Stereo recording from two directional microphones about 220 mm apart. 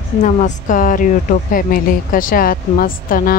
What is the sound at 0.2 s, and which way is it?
A woman's voice, 35° left (ahead or behind).